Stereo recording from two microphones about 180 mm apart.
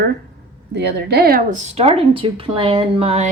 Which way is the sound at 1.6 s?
35° right (ahead or behind).